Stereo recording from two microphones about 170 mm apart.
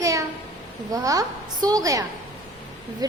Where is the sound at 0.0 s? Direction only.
20° right (ahead or behind).